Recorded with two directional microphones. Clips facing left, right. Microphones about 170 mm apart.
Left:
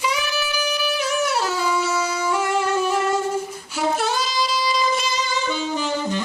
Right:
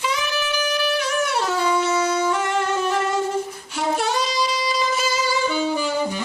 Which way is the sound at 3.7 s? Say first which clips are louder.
Even; centre (ahead or behind).